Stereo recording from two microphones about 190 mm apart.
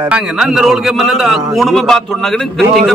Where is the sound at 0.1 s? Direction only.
5° right (ahead or behind).